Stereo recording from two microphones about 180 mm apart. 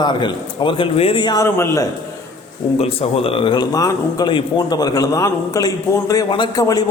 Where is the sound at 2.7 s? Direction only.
35° left (ahead or behind).